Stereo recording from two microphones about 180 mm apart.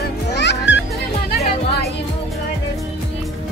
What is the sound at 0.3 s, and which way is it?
Music, 70° left (ahead or behind).